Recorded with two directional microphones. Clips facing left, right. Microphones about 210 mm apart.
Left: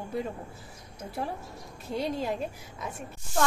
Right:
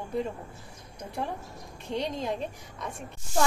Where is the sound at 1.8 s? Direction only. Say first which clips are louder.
Left 1 dB; 5° left (ahead or behind).